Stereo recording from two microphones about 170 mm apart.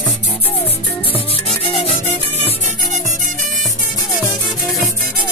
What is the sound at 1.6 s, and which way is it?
Music, 35° left (ahead or behind).